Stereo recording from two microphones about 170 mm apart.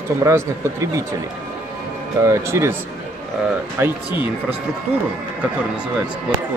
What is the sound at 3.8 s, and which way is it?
Speech, 15° right (ahead or behind).